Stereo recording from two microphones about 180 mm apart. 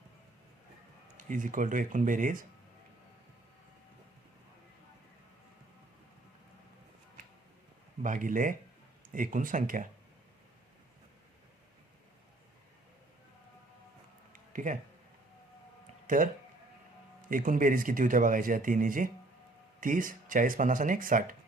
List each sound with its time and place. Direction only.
1.1 s speech: 45° right (ahead or behind)
8.0 s speech: 45° right (ahead or behind)
14.5 s speech: 45° right (ahead or behind)
16.0 s speech: 45° right (ahead or behind)